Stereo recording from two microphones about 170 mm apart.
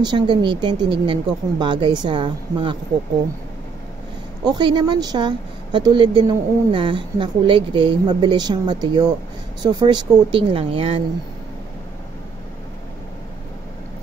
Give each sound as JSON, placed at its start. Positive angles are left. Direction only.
{"t": 0.0, "sound": "a woman's voice", "side_deg": -25}
{"t": 4.5, "sound": "a woman's voice", "side_deg": -25}